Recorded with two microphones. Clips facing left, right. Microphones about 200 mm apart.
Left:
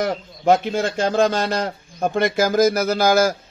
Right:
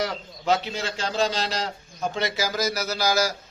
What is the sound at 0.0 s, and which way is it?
A man's voice, 50° left (ahead or behind).